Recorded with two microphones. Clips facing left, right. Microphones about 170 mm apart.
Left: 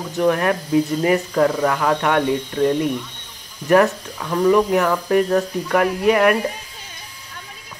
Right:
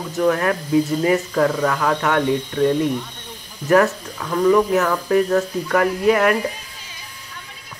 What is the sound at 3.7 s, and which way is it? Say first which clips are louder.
Speech: left 1 dB; 15° left (ahead or behind).